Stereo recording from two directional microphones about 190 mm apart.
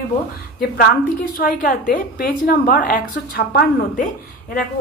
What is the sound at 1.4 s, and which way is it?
A woman's voice, 50° left (ahead or behind).